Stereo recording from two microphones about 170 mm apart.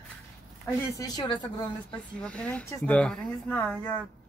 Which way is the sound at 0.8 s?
20° left (ahead or behind).